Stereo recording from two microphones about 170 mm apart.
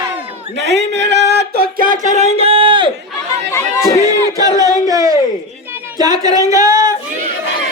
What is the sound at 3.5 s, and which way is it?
Chatter, 15° left (ahead or behind).